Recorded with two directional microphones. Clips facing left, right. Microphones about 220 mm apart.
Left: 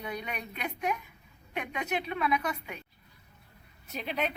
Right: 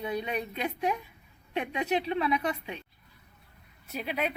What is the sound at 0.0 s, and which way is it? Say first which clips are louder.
Speech: right 6 dB; 25° right (ahead or behind).